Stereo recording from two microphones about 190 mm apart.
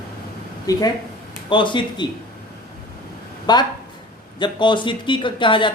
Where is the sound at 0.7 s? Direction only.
20° left (ahead or behind).